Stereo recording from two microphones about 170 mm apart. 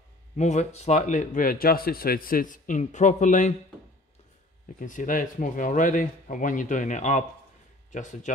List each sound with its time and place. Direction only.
0.4 s speech: 45° left (ahead or behind)
4.7 s speech: 50° left (ahead or behind)